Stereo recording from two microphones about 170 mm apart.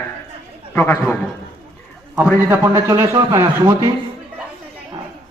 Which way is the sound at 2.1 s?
10° right (ahead or behind).